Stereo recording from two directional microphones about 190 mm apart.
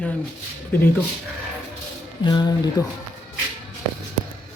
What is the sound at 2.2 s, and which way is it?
Speech, 20° left (ahead or behind).